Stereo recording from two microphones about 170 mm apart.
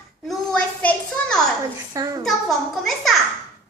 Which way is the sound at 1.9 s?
20° right (ahead or behind).